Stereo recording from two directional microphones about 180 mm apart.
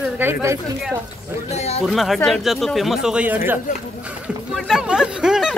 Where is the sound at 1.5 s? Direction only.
35° left (ahead or behind).